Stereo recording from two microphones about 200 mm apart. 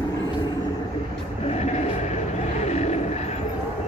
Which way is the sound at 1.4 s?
35° left (ahead or behind).